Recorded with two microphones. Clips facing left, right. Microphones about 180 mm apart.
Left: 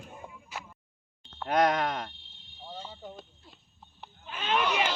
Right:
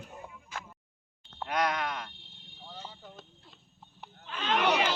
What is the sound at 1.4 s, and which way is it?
Wail, 45° left (ahead or behind).